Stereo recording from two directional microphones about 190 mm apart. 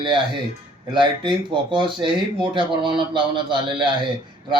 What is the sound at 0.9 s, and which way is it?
Speech, 25° right (ahead or behind).